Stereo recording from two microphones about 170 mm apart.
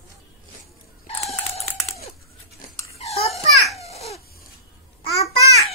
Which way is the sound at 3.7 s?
40° left (ahead or behind).